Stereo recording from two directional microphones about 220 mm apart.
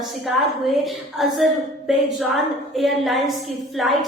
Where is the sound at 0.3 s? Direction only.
Centre (ahead or behind).